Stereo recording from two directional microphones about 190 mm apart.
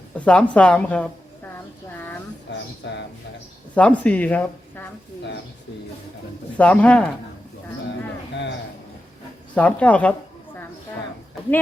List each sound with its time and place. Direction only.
0.1 s a woman's voice: 5° left (ahead or behind)
1.9 s a sound: 10° left (ahead or behind)
2.5 s a sound: 65° left (ahead or behind)
3.8 s speech: 5° left (ahead or behind)
6.6 s speech: 5° left (ahead or behind)
9.6 s speech: 5° left (ahead or behind)